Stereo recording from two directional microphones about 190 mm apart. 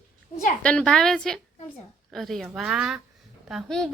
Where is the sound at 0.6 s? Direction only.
5° left (ahead or behind).